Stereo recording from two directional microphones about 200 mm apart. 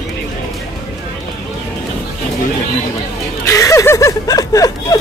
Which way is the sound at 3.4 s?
15° left (ahead or behind).